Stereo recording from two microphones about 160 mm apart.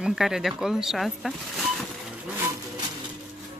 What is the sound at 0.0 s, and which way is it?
Speech, 5° right (ahead or behind).